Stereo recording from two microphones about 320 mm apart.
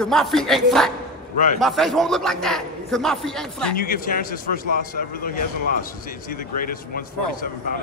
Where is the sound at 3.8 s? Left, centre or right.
Left.